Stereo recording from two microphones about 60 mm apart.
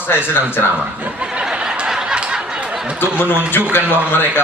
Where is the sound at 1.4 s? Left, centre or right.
Centre.